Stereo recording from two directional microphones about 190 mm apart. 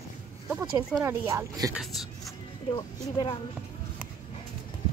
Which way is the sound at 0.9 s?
15° right (ahead or behind).